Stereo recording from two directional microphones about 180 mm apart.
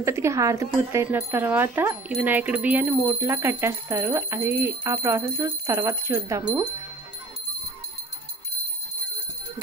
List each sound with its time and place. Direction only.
0.0 s speech: 15° right (ahead or behind)